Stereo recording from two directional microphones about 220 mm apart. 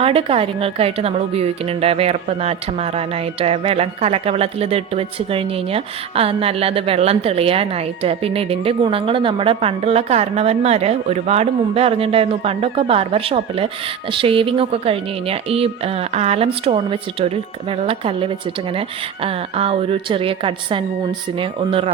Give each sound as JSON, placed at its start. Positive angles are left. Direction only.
{"t": 0.0, "sound": "a woman's voice", "side_deg": -25}